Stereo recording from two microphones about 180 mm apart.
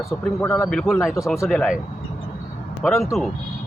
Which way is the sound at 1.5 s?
Centre (ahead or behind).